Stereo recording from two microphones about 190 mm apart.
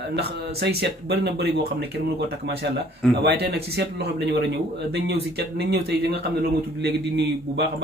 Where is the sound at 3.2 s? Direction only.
60° right (ahead or behind).